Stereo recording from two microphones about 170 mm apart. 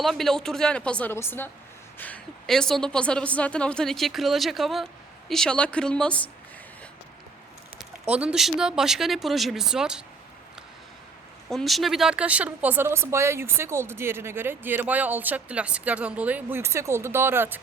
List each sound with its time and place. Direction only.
0.0 s a woman's voice: centre (ahead or behind)
7.8 s a woman's voice: 5° right (ahead or behind)
11.4 s speech: centre (ahead or behind)